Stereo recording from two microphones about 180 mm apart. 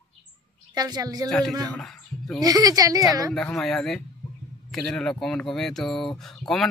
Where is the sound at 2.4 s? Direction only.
20° right (ahead or behind).